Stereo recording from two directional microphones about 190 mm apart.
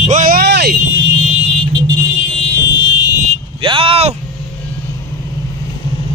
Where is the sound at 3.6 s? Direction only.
30° right (ahead or behind).